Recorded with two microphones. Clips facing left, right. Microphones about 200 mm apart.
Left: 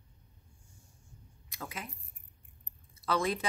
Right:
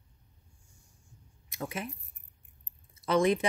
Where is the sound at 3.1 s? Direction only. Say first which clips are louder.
Right 6 dB; 20° right (ahead or behind).